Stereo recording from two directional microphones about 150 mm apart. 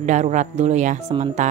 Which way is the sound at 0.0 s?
55° right (ahead or behind).